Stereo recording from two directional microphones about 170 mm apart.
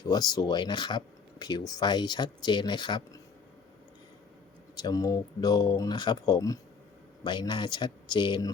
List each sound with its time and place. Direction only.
0.0 s speech: 25° left (ahead or behind)
4.8 s speech: 20° left (ahead or behind)